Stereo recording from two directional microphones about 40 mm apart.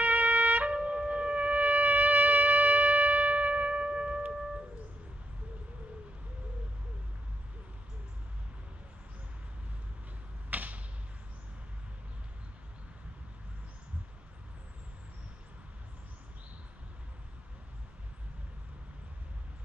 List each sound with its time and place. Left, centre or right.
0.0 s music: right
0.7 s shofar: right
10.5 s a sound: right